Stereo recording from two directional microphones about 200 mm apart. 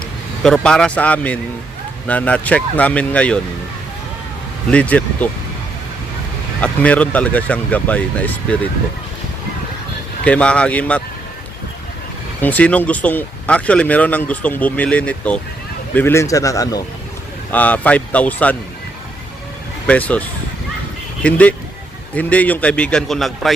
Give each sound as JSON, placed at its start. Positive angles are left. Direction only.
{"t": 0.4, "sound": "speech", "side_deg": 5}
{"t": 4.7, "sound": "speech", "side_deg": 5}
{"t": 6.6, "sound": "speech", "side_deg": 5}
{"t": 10.2, "sound": "a man's voice", "side_deg": 5}
{"t": 12.4, "sound": "speech", "side_deg": 10}
{"t": 19.9, "sound": "speech", "side_deg": 5}
{"t": 21.2, "sound": "a man's voice", "side_deg": 5}